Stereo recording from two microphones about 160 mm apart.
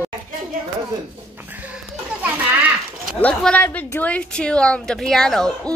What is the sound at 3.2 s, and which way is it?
A woman's voice, 5° left (ahead or behind).